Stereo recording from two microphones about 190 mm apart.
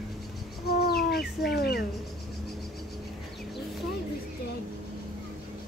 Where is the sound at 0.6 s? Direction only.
55° left (ahead or behind).